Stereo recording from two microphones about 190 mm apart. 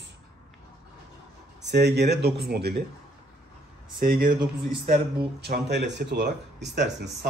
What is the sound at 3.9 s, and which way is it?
Speech, 50° right (ahead or behind).